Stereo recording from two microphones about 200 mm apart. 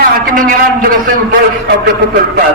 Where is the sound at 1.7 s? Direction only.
55° right (ahead or behind).